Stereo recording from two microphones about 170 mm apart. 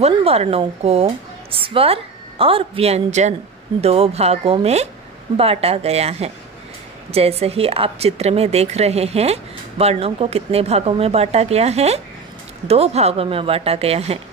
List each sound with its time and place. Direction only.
0.0 s a woman's voice: 40° right (ahead or behind)